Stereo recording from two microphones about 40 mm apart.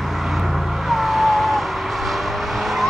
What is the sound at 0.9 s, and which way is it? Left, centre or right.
Car, centre.